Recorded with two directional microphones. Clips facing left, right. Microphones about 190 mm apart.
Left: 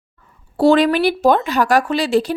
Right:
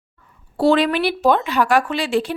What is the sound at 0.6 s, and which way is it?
A woman's voice, 45° left (ahead or behind).